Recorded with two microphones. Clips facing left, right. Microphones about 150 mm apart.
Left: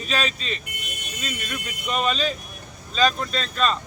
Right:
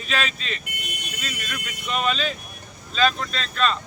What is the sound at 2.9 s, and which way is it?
Speech, 40° left (ahead or behind).